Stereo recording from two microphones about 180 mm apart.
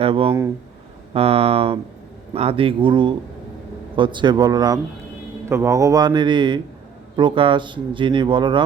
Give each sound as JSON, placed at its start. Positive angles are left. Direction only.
{"t": 0.0, "sound": "speech", "side_deg": -30}